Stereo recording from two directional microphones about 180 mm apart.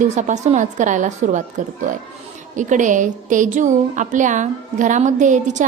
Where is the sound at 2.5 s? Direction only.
45° right (ahead or behind).